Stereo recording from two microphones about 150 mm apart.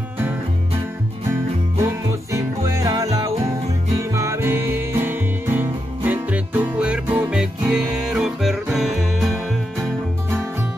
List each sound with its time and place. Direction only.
1.3 s music: 15° right (ahead or behind)